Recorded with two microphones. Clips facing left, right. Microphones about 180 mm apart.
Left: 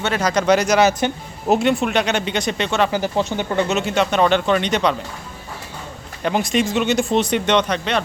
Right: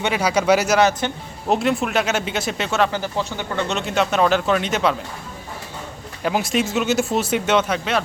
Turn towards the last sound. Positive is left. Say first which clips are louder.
# left 1 dB
turn(degrees=-5)  # may be behind; listen again after turning